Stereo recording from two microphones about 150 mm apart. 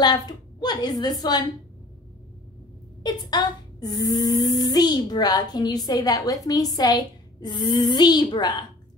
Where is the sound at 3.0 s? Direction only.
25° left (ahead or behind).